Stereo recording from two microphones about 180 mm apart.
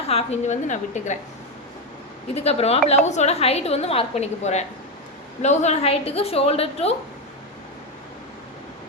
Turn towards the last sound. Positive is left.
turn(degrees=35)  # may be behind; listen again after turning